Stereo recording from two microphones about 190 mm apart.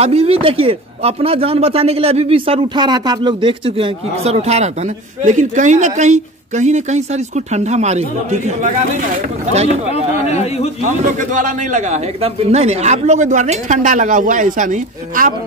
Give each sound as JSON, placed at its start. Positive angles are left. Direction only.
{"t": 0.0, "sound": "speech", "side_deg": -30}
{"t": 10.3, "sound": "a man's voice", "side_deg": 35}
{"t": 10.9, "sound": "speech", "side_deg": -40}